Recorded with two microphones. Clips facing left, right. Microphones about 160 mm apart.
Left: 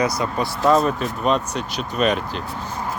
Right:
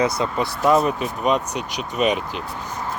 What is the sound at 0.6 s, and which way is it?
Speech, 10° right (ahead or behind).